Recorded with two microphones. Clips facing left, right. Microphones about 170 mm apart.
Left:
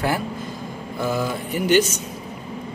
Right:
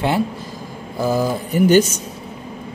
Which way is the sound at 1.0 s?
35° right (ahead or behind).